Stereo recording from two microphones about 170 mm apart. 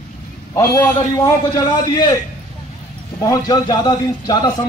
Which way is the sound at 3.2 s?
20° left (ahead or behind).